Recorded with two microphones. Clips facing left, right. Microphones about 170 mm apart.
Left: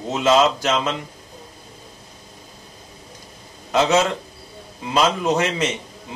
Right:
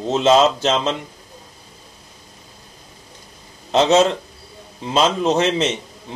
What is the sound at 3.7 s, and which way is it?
A man's voice, 25° right (ahead or behind).